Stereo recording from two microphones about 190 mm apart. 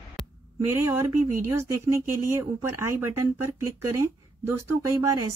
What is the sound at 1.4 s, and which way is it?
Speech, 15° right (ahead or behind).